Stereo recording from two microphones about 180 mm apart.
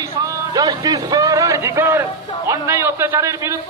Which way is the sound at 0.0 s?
20° right (ahead or behind).